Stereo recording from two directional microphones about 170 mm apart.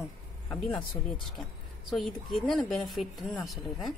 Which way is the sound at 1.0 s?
30° left (ahead or behind).